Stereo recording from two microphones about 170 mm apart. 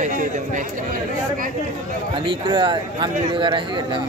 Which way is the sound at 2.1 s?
30° right (ahead or behind).